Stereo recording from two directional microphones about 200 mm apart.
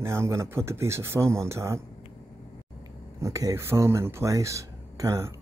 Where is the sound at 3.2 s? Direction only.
15° right (ahead or behind).